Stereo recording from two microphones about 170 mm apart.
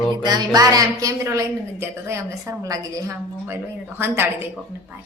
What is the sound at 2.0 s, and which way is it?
A woman's voice, 15° right (ahead or behind).